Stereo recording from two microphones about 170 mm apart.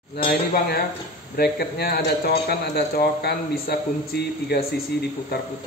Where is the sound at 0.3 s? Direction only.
65° left (ahead or behind).